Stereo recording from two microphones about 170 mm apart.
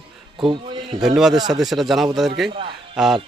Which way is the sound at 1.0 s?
Centre (ahead or behind).